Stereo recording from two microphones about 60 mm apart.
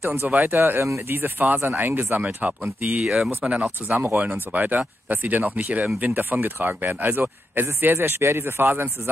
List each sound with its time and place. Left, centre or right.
0.0 s speech: right
3.4 s speech: centre
3.8 s speech: right